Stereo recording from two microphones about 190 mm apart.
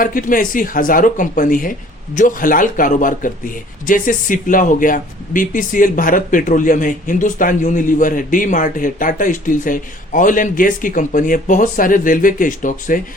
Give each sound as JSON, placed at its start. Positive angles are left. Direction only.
{"t": 0.0, "sound": "a man's voice", "side_deg": 45}